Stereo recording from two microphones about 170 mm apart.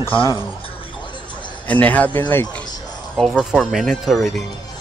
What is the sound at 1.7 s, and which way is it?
Speech, 10° left (ahead or behind).